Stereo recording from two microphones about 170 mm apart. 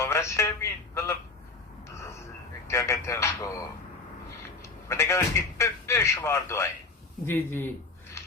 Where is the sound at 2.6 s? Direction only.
15° left (ahead or behind).